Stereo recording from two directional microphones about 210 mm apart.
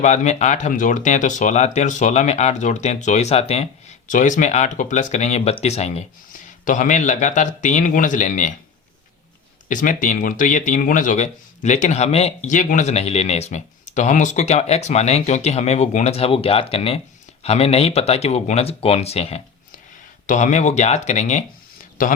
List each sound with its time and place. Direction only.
0.0 s speech: 35° left (ahead or behind)
9.6 s speech: 40° left (ahead or behind)